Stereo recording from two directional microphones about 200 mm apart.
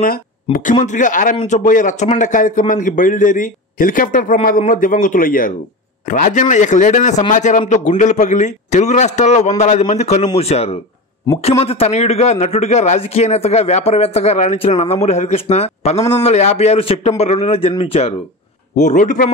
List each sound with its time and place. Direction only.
0.0 s speech: 45° left (ahead or behind)